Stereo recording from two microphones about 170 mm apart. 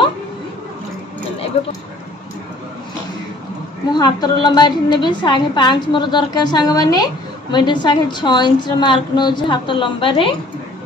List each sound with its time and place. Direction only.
3.9 s a woman's voice: 25° left (ahead or behind)